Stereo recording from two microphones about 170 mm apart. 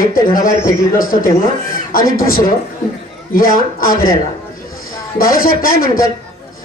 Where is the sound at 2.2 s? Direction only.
55° left (ahead or behind).